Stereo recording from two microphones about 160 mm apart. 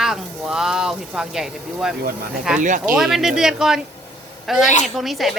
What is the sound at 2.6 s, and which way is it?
Speech, 50° right (ahead or behind).